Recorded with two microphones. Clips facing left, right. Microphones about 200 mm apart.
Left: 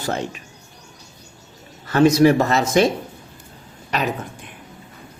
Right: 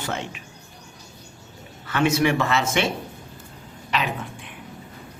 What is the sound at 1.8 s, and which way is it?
Speech, 40° left (ahead or behind).